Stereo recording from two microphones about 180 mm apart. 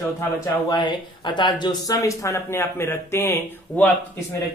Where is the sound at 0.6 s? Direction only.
25° left (ahead or behind).